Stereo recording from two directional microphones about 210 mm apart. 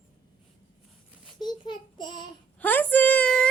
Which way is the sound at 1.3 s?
20° left (ahead or behind).